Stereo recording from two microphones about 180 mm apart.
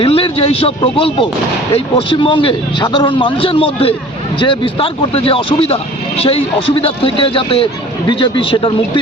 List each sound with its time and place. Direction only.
0.0 s a man's voice: 30° left (ahead or behind)